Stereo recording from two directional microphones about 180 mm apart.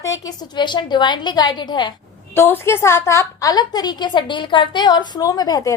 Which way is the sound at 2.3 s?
15° left (ahead or behind).